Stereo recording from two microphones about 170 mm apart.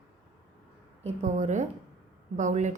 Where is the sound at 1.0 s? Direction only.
45° right (ahead or behind).